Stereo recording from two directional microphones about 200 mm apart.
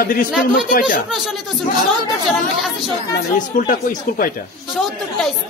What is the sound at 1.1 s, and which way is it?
Speech, centre (ahead or behind).